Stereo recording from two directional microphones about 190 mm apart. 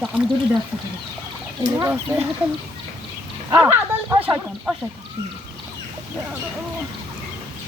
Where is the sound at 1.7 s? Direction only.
15° right (ahead or behind).